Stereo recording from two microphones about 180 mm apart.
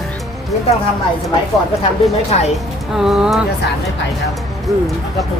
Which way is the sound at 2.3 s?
35° left (ahead or behind).